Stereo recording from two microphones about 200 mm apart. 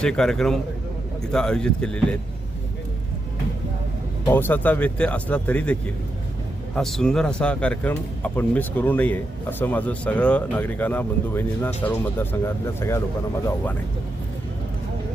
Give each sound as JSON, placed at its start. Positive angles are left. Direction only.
{"t": 0.0, "sound": "speech", "side_deg": 5}
{"t": 4.3, "sound": "speech", "side_deg": 10}